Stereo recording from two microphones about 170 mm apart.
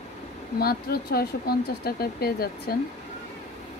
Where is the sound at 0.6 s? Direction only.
65° left (ahead or behind).